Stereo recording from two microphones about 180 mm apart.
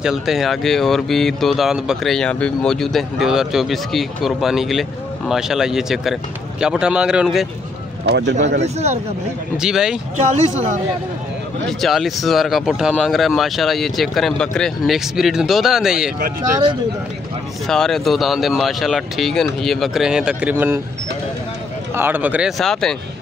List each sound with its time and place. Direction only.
0.0 s speech: centre (ahead or behind)
8.0 s speech: 75° right (ahead or behind)
8.6 s speech: 40° right (ahead or behind)
9.6 s speech: 5° right (ahead or behind)
10.1 s speech: 45° right (ahead or behind)
11.8 s speech: centre (ahead or behind)
17.6 s speech: centre (ahead or behind)
21.9 s speech: 10° right (ahead or behind)